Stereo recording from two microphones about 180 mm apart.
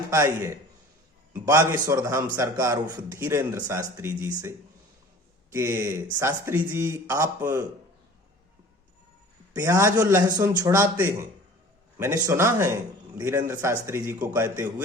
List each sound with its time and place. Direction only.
0.1 s speech: 15° right (ahead or behind)
9.6 s speech: 15° right (ahead or behind)